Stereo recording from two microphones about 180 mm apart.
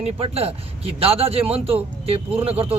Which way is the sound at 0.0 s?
35° right (ahead or behind).